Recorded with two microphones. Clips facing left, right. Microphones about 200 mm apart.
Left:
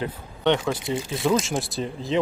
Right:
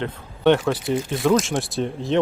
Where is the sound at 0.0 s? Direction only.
5° right (ahead or behind).